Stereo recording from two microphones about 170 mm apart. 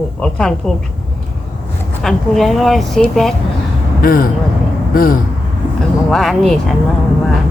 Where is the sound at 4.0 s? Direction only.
55° left (ahead or behind).